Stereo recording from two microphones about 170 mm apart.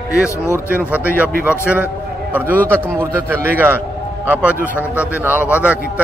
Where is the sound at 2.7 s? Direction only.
15° right (ahead or behind).